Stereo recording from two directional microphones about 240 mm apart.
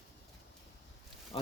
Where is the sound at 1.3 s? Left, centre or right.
Left.